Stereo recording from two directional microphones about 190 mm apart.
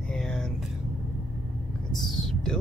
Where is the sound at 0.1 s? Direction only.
5° left (ahead or behind).